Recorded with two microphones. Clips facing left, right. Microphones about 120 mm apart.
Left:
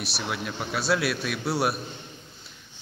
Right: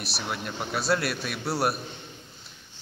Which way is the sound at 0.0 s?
Centre (ahead or behind).